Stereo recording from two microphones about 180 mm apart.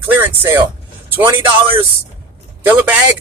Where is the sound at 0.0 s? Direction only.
10° right (ahead or behind).